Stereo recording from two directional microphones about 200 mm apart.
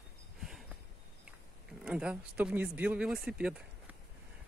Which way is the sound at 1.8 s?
5° right (ahead or behind).